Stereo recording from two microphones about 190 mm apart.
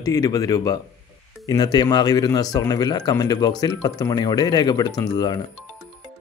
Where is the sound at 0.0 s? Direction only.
20° left (ahead or behind).